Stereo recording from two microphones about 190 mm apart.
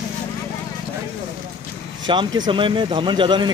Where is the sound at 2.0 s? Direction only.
25° right (ahead or behind).